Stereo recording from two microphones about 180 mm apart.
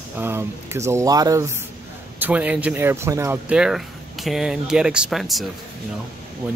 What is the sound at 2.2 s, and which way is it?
Speech, 10° right (ahead or behind).